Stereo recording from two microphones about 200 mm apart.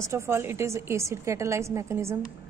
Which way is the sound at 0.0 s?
15° right (ahead or behind).